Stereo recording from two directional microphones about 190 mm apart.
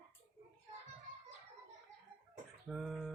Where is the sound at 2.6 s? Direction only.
Centre (ahead or behind).